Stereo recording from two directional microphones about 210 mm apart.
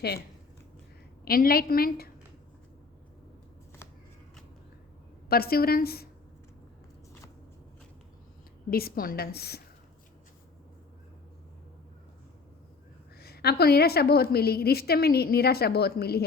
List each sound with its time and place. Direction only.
1.2 s a woman's voice: 45° left (ahead or behind)
5.3 s a woman's voice: 45° left (ahead or behind)
8.7 s a woman's voice: 45° left (ahead or behind)
13.1 s a woman's voice: 50° left (ahead or behind)